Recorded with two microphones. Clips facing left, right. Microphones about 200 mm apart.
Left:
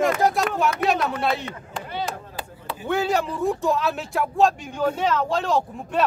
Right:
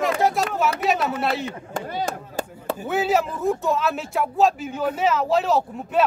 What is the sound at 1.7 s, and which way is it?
Chop, 45° right (ahead or behind).